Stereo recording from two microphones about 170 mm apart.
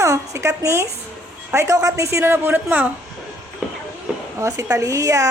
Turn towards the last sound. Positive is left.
turn(degrees=-20)  # may be behind; listen again after turning